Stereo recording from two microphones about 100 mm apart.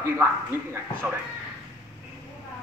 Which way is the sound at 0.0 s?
25° right (ahead or behind).